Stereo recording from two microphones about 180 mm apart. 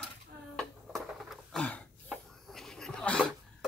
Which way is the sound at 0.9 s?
Centre (ahead or behind).